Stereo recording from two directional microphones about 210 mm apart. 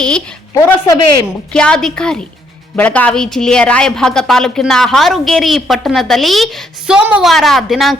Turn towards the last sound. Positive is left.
turn(degrees=0)  # may be behind; listen again after turning